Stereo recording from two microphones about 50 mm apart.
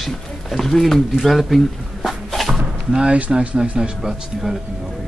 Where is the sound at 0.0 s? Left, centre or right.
Centre.